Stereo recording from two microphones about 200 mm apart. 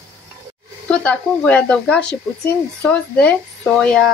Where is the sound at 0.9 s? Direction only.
5° left (ahead or behind).